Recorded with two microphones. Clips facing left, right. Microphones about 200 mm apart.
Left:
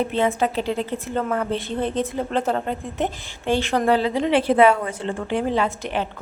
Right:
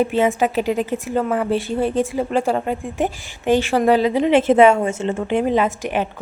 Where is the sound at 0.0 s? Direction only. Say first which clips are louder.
Right 4 dB; 15° right (ahead or behind).